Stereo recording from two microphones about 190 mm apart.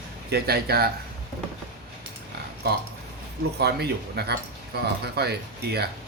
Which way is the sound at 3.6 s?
60° right (ahead or behind).